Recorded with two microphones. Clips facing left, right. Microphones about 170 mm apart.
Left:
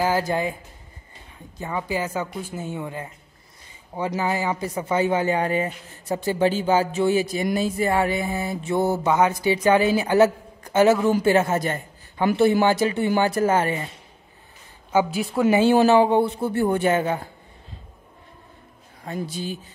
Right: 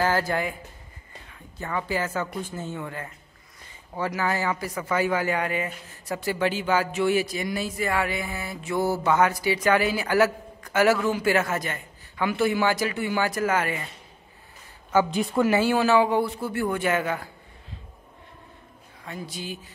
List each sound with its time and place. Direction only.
0.0 s mantra: 15° left (ahead or behind)
1.6 s speech: 15° left (ahead or behind)
4.2 s mantra: 20° left (ahead or behind)
11.2 s a man's voice: 25° left (ahead or behind)
12.6 s mantra: 25° left (ahead or behind)
15.0 s speech: 5° left (ahead or behind)
15.4 s mantra: 20° left (ahead or behind)